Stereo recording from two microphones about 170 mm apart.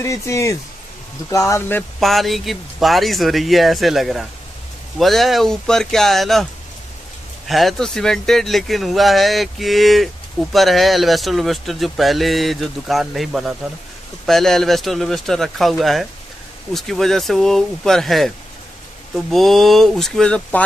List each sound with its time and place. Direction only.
0.0 s speech: 15° left (ahead or behind)
2.0 s speech: centre (ahead or behind)
7.4 s speech: centre (ahead or behind)
19.3 s speech: centre (ahead or behind)